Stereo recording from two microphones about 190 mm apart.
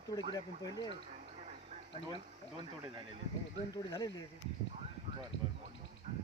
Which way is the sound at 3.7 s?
20° left (ahead or behind).